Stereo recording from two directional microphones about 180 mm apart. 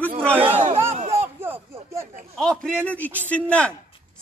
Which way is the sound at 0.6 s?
35° right (ahead or behind).